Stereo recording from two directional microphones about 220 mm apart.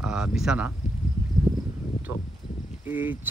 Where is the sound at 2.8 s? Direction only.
5° right (ahead or behind).